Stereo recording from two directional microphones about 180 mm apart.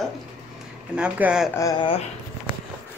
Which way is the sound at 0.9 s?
5° right (ahead or behind).